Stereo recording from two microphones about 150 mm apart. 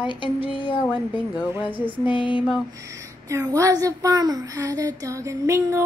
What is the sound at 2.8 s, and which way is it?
A woman's voice, 20° right (ahead or behind).